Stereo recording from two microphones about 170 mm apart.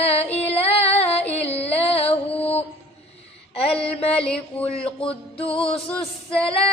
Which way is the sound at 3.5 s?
35° left (ahead or behind).